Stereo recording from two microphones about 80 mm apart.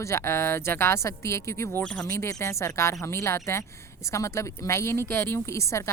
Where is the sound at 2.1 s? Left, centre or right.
Left.